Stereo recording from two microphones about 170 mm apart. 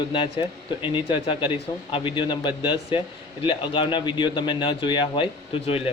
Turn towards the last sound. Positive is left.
turn(degrees=35)  # may be behind; listen again after turning